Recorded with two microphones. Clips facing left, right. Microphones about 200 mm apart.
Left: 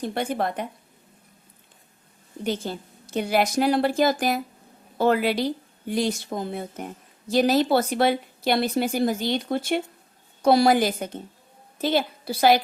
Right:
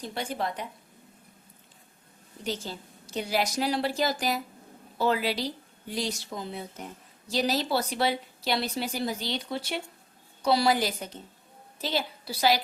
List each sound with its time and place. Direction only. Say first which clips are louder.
0.0 s a woman's voice: left 6 dB; 55° left (ahead or behind)
2.4 s a woman's voice: left 6 dB; 55° left (ahead or behind)